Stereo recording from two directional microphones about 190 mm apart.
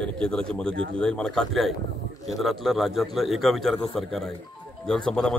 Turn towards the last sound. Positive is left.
turn(degrees=5)  # may be behind; listen again after turning